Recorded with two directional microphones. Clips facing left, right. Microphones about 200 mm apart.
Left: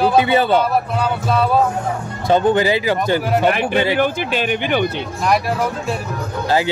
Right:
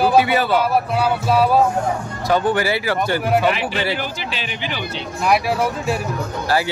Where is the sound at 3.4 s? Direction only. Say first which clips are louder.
Left 4 dB; 50° left (ahead or behind).